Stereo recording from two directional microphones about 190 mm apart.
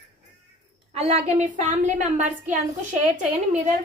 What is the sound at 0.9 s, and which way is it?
A woman's voice, 35° right (ahead or behind).